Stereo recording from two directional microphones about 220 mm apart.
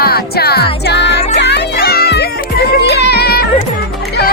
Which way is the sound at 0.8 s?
50° left (ahead or behind).